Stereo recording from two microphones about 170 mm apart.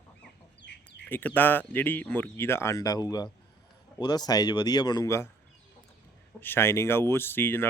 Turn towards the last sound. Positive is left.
turn(degrees=15)  # may be behind; listen again after turning